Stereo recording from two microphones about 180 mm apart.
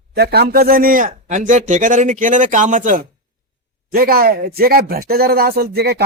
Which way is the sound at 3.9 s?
55° right (ahead or behind).